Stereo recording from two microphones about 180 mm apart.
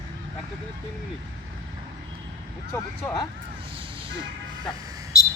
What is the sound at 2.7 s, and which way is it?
Speech, 20° left (ahead or behind).